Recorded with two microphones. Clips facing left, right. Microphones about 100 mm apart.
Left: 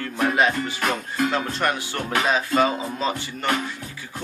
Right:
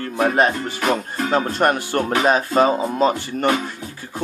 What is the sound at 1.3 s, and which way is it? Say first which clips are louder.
Speech: right 6 dB; 45° right (ahead or behind).